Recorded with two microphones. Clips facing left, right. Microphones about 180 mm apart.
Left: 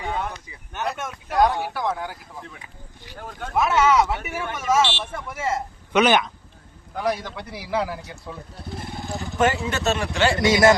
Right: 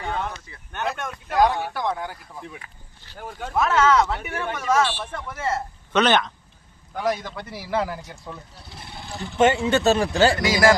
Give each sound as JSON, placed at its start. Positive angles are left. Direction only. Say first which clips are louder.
{"t": 0.0, "sound": "speech", "louder": "even", "side_deg": 10}
{"t": 3.2, "sound": "speech", "louder": "right 1 dB", "side_deg": -10}
{"t": 3.5, "sound": "speech", "louder": "even", "side_deg": 10}
{"t": 9.4, "sound": "speech", "louder": "right 4 dB", "side_deg": -25}
{"t": 10.4, "sound": "a man's voice", "louder": "left 2 dB", "side_deg": 25}